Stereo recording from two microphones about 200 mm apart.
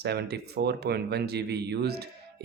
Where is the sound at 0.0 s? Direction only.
55° right (ahead or behind).